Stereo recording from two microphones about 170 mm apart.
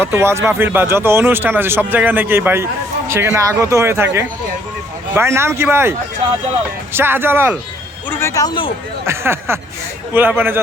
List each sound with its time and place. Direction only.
0.0 s speech: 15° right (ahead or behind)
8.1 s speech: 15° left (ahead or behind)
9.0 s speech: 15° right (ahead or behind)